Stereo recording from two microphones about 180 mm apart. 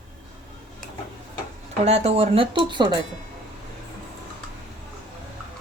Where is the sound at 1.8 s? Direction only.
35° right (ahead or behind).